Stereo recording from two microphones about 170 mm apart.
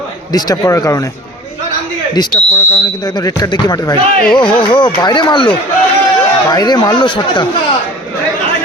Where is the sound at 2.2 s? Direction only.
25° left (ahead or behind).